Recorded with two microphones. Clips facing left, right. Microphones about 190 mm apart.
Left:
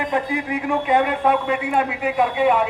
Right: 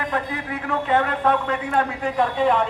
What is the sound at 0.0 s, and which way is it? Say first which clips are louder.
A man's voice: left 4 dB; 15° left (ahead or behind).